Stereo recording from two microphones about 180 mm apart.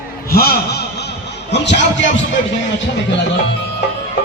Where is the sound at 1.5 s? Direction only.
75° left (ahead or behind).